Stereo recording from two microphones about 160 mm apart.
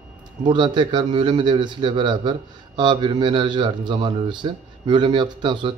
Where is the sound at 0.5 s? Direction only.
30° right (ahead or behind).